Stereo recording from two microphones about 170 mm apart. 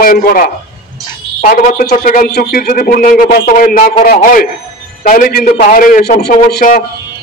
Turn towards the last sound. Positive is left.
turn(degrees=65)  # may be behind; listen again after turning